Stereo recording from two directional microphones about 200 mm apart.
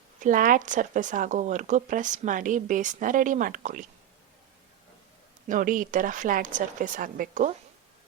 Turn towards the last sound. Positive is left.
turn(degrees=-40)  # may be behind; listen again after turning